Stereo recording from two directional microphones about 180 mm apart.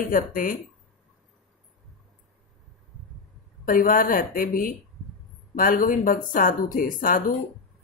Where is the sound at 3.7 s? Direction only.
50° left (ahead or behind).